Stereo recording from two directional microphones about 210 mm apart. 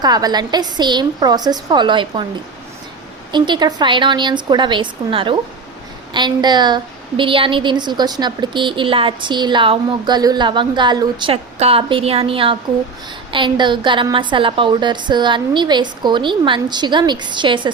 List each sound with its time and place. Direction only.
0.0 s a woman's voice: 20° right (ahead or behind)
3.3 s a woman's voice: 20° right (ahead or behind)